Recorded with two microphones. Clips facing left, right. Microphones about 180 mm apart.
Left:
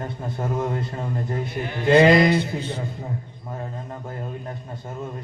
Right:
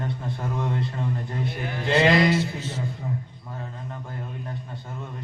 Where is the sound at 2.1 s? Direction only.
Centre (ahead or behind).